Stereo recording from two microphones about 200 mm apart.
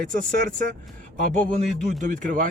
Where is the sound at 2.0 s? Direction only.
40° right (ahead or behind).